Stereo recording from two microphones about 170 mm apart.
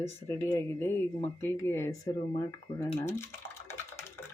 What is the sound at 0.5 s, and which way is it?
Speech, 15° left (ahead or behind).